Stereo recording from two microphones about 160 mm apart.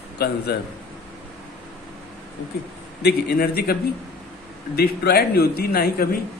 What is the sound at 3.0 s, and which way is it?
Speech, 80° left.